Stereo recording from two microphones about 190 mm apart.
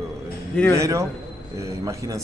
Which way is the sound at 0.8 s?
15° right (ahead or behind).